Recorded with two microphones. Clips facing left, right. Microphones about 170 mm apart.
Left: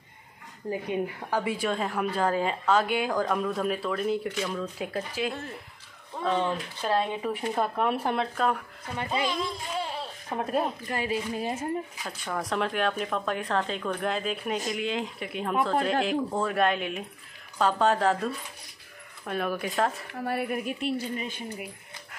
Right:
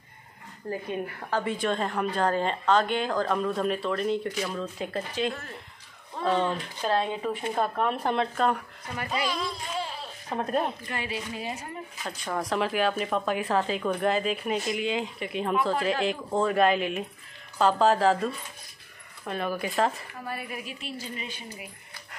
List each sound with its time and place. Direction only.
0.7 s a woman's voice: 15° left (ahead or behind)
8.9 s speech: 20° left (ahead or behind)
10.3 s a woman's voice: 5° left (ahead or behind)
10.9 s a woman's voice: 40° left (ahead or behind)
12.0 s a woman's voice: centre (ahead or behind)
20.1 s speech: 65° left (ahead or behind)